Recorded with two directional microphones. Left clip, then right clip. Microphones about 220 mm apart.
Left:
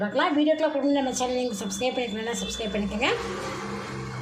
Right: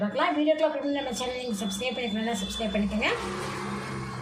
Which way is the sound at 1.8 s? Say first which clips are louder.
Left 4 dB; 25° left (ahead or behind).